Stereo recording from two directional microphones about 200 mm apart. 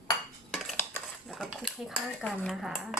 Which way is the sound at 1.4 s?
Centre (ahead or behind).